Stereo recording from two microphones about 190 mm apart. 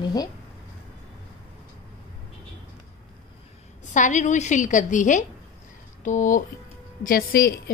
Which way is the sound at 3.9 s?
40° left (ahead or behind).